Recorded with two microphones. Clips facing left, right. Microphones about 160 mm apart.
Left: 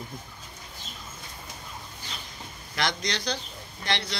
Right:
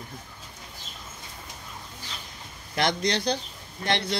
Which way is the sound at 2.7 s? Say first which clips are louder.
Right 5 dB; 50° right (ahead or behind).